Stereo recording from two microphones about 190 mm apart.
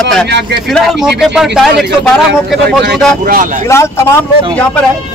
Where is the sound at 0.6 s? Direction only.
Centre (ahead or behind).